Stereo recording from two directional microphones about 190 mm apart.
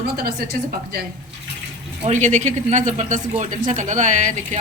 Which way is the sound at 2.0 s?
40° right (ahead or behind).